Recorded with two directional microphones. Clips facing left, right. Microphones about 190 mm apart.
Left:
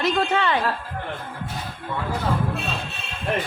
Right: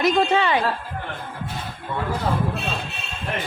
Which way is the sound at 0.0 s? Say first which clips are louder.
Right 3 dB; 15° right (ahead or behind).